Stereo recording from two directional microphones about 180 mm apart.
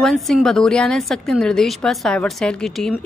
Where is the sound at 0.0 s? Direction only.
Centre (ahead or behind).